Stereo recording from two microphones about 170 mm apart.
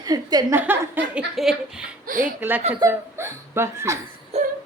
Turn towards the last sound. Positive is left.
turn(degrees=-40)  # may be behind; listen again after turning